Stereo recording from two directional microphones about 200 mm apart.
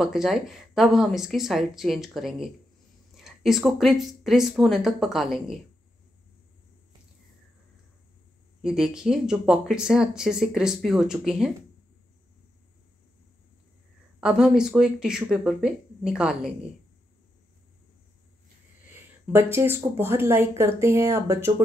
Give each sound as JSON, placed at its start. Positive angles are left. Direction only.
{"t": 0.0, "sound": "speech", "side_deg": 0}
{"t": 8.6, "sound": "speech", "side_deg": -5}
{"t": 14.2, "sound": "speech", "side_deg": -5}
{"t": 19.2, "sound": "speech", "side_deg": -10}